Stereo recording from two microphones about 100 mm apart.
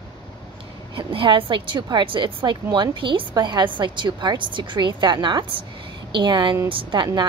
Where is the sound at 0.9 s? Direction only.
60° right (ahead or behind).